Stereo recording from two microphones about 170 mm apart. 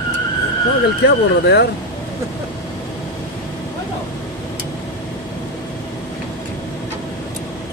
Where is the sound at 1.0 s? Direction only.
80° left.